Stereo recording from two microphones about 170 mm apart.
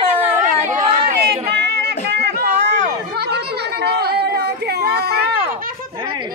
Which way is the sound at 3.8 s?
70° right (ahead or behind).